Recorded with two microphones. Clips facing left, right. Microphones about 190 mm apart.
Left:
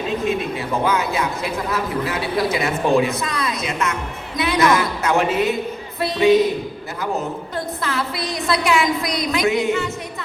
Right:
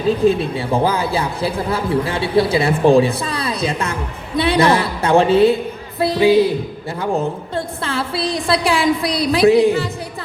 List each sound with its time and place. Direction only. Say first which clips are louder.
0.1 s a man's voice: right 9 dB; 35° right (ahead or behind)
7.5 s a man's voice: right 2 dB; 30° right (ahead or behind)